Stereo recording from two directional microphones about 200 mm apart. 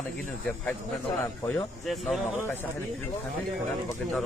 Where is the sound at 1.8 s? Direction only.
Centre (ahead or behind).